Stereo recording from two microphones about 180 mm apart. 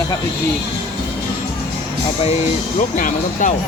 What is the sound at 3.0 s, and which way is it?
Speech, 45° left (ahead or behind).